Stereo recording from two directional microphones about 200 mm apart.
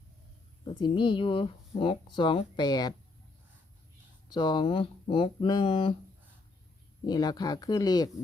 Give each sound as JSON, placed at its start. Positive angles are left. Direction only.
{"t": 0.7, "sound": "speech", "side_deg": 25}
{"t": 4.3, "sound": "speech", "side_deg": 20}
{"t": 7.0, "sound": "speech", "side_deg": 20}